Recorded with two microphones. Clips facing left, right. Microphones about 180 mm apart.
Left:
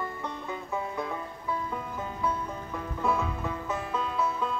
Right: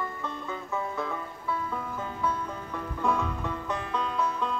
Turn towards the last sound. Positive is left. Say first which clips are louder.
# even
turn(degrees=5)  # may be behind; listen again after turning